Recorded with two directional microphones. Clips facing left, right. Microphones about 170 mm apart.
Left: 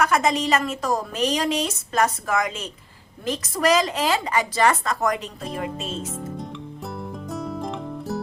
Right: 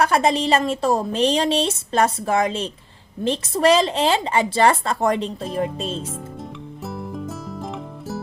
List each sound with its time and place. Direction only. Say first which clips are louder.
0.0 s speech: right 2 dB; 30° right (ahead or behind)
7.6 s music: left 2 dB; centre (ahead or behind)